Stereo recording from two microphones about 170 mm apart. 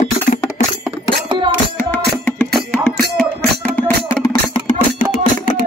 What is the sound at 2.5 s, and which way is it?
Music, 5° left (ahead or behind).